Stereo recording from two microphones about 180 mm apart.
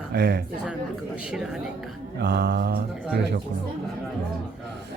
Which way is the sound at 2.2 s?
65° right (ahead or behind).